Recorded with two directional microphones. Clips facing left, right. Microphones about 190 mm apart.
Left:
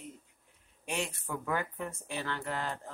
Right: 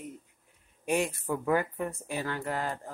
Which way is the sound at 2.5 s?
45° right (ahead or behind).